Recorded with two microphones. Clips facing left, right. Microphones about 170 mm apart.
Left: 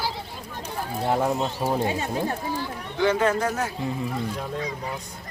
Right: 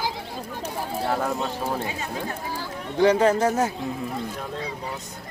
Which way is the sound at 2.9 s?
30° right (ahead or behind).